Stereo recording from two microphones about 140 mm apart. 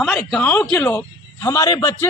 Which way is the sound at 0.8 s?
15° left (ahead or behind).